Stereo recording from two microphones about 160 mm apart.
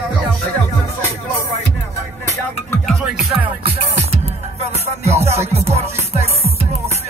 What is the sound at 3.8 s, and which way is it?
Music, 40° right (ahead or behind).